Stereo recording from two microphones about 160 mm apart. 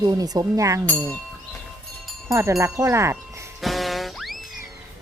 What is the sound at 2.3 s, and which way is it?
Speech, 20° right (ahead or behind).